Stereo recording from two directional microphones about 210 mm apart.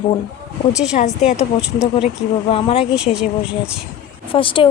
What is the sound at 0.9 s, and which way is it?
Speech, 35° left (ahead or behind).